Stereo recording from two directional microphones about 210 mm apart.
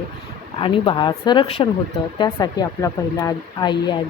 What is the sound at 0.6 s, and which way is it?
Speech, 20° left (ahead or behind).